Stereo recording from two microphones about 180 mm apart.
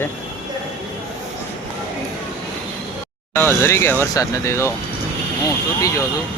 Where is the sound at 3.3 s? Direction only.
15° left (ahead or behind).